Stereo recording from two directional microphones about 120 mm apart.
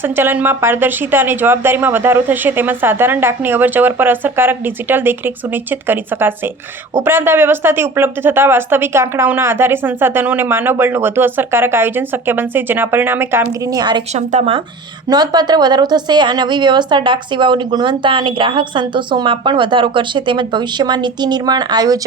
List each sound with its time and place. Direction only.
0.0 s speech: 15° right (ahead or behind)
13.7 s a woman's voice: 35° right (ahead or behind)
14.1 s speech: 70° right (ahead or behind)
15.1 s a woman's voice: 35° right (ahead or behind)